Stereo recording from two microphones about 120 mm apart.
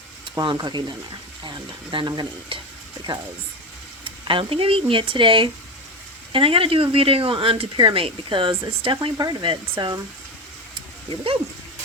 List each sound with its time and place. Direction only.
0.3 s stir: 40° right (ahead or behind)
3.1 s speech: 45° right (ahead or behind)
9.1 s stir: 35° right (ahead or behind)
10.8 s a sound: 50° right (ahead or behind)